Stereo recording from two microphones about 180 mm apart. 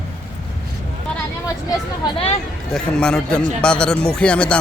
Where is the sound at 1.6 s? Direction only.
25° left (ahead or behind).